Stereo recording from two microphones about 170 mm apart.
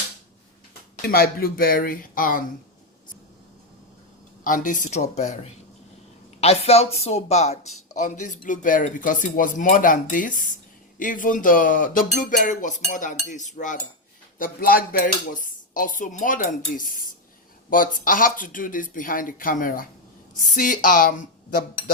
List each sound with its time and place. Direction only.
1.0 s speech: 65° left (ahead or behind)
4.4 s speech: 50° left (ahead or behind)